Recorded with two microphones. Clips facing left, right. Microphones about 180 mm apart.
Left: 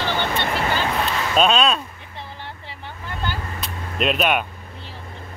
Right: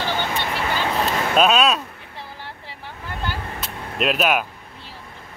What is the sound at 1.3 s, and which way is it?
Speech, 5° right (ahead or behind).